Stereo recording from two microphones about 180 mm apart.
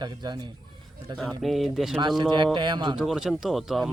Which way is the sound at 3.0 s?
Centre (ahead or behind).